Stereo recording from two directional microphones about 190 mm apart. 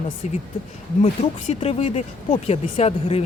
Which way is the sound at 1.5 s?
30° left (ahead or behind).